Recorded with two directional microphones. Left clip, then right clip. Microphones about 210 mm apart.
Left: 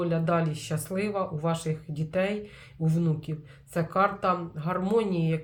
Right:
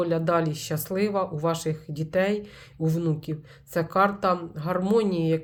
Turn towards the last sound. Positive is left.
turn(degrees=-45)  # may be behind; listen again after turning